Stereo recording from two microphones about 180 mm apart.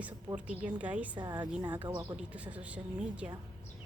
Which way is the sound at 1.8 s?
20° right (ahead or behind).